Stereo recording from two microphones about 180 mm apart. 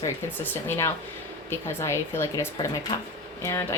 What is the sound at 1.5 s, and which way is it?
Speech, 15° left (ahead or behind).